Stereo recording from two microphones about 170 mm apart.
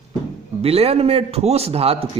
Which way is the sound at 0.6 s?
35° right (ahead or behind).